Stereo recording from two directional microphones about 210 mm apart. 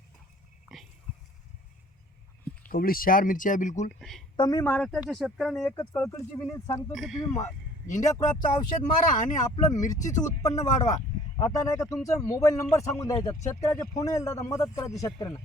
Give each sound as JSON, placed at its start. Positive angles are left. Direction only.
{"t": 2.6, "sound": "speech", "side_deg": 45}
{"t": 4.4, "sound": "speech", "side_deg": 15}
{"t": 6.9, "sound": "speech", "side_deg": 0}
{"t": 7.9, "sound": "speech", "side_deg": 35}
{"t": 9.6, "sound": "speech", "side_deg": 15}